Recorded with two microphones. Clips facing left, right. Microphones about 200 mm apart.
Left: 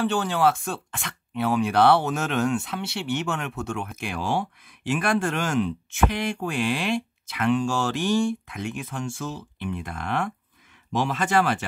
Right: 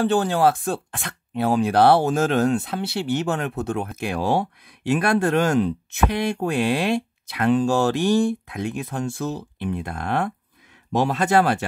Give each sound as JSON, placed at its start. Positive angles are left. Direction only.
{"t": 0.0, "sound": "speech", "side_deg": -35}